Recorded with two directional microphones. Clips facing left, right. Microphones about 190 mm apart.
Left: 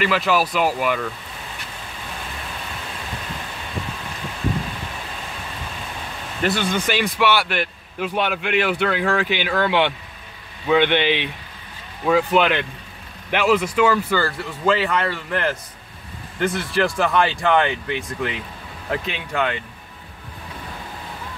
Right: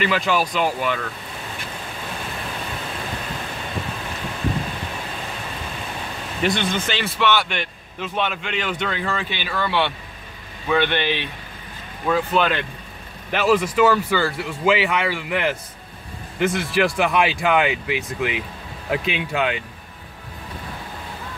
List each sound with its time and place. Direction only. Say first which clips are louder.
0.0 s speech: left 1 dB; centre (ahead or behind)
6.4 s a man's voice: left 1 dB; 5° left (ahead or behind)
13.7 s speech: right 1 dB; 5° right (ahead or behind)